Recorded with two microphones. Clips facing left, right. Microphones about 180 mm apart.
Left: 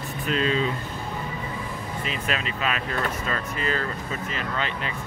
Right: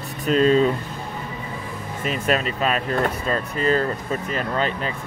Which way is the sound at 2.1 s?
45° right (ahead or behind).